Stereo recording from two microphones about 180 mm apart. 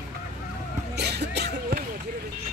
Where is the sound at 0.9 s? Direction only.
65° right (ahead or behind).